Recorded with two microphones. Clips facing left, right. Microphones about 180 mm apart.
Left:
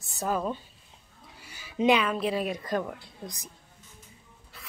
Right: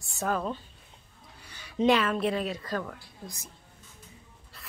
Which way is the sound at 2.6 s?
20° left (ahead or behind).